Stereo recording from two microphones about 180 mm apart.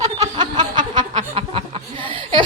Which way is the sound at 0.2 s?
25° right (ahead or behind).